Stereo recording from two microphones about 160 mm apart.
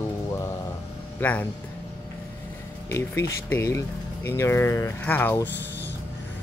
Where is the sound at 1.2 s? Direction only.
10° left (ahead or behind).